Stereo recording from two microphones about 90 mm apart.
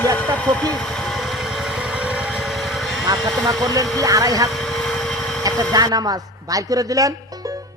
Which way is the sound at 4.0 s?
40° right (ahead or behind).